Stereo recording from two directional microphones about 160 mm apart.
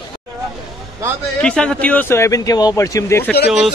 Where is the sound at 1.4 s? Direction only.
5° left (ahead or behind).